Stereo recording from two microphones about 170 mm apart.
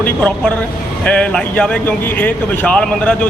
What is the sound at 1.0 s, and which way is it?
Speech, 5° left (ahead or behind).